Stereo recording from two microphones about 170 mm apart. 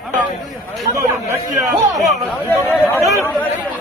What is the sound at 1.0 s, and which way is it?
Speech, 15° right (ahead or behind).